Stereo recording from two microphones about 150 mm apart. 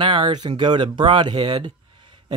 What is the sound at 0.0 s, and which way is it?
A man's voice, 35° right (ahead or behind).